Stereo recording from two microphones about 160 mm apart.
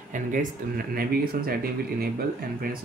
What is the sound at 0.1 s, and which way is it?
Speech, 55° right (ahead or behind).